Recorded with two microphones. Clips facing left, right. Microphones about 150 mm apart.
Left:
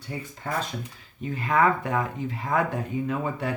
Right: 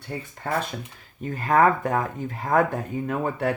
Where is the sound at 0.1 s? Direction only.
45° right (ahead or behind).